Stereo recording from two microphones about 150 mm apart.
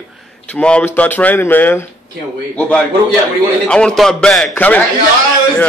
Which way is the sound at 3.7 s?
5° left (ahead or behind).